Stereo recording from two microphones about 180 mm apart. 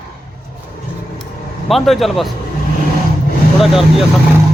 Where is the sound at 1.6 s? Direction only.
Centre (ahead or behind).